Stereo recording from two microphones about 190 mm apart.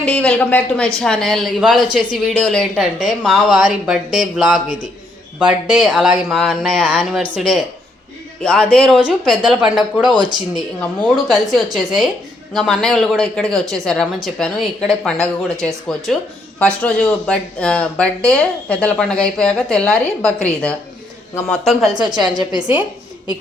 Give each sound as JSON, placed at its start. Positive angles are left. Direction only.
{"t": 0.0, "sound": "speech", "side_deg": 5}
{"t": 5.4, "sound": "speech", "side_deg": -5}
{"t": 10.1, "sound": "a woman's voice", "side_deg": -20}
{"t": 11.3, "sound": "speech", "side_deg": 0}
{"t": 22.1, "sound": "a woman's voice", "side_deg": -20}